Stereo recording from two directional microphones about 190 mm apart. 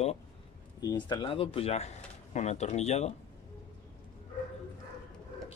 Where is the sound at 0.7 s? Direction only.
20° left (ahead or behind).